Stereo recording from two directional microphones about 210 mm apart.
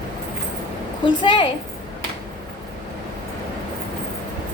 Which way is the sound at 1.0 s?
20° left (ahead or behind).